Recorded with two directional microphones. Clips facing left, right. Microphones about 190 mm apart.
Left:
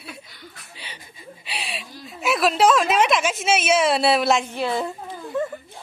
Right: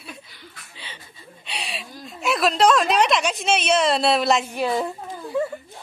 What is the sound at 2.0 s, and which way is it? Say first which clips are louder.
A woman's voice: left 1 dB; centre (ahead or behind).